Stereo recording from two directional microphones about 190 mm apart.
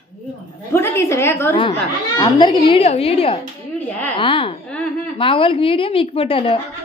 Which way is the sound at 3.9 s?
10° left (ahead or behind).